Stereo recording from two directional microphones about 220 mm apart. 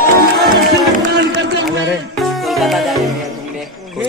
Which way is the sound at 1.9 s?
Centre (ahead or behind).